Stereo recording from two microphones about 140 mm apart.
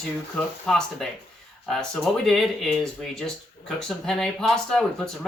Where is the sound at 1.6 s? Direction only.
Centre (ahead or behind).